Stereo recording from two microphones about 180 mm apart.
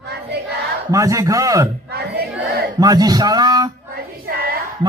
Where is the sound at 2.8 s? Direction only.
20° right (ahead or behind).